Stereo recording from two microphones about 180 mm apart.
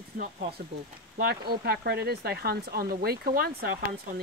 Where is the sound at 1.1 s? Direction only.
60° right (ahead or behind).